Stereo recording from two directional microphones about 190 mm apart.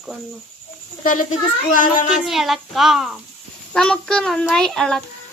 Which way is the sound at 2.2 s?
Centre (ahead or behind).